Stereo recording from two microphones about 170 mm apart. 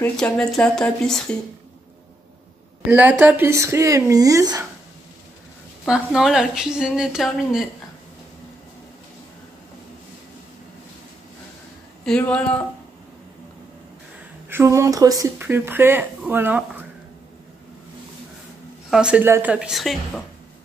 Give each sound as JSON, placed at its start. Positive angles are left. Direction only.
{"t": 0.0, "sound": "a woman's voice", "side_deg": 5}
{"t": 2.9, "sound": "speech", "side_deg": -10}
{"t": 5.9, "sound": "a woman's voice", "side_deg": -5}
{"t": 12.0, "sound": "speech", "side_deg": 5}
{"t": 14.5, "sound": "speech", "side_deg": -15}
{"t": 18.9, "sound": "a woman's voice", "side_deg": -5}